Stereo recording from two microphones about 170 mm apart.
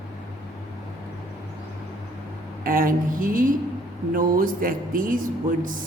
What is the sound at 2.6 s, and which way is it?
A woman's voice, 55° right (ahead or behind).